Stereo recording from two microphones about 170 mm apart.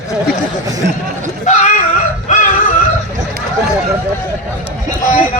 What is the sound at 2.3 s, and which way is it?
Chicken, 45° left (ahead or behind).